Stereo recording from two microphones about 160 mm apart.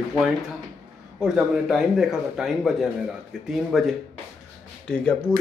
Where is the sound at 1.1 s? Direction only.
5° right (ahead or behind).